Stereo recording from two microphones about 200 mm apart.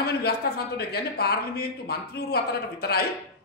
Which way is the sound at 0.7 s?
50° left (ahead or behind).